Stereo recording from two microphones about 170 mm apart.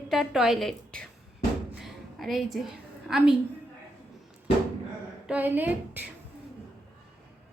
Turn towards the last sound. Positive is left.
turn(degrees=-10)  # may be behind; listen again after turning